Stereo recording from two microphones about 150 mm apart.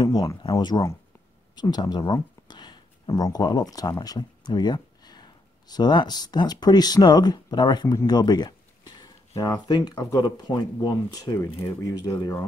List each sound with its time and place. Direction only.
0.0 s speech: 25° left (ahead or behind)